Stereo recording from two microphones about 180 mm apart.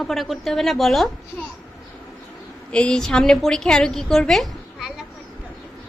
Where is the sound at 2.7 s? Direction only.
5° left (ahead or behind).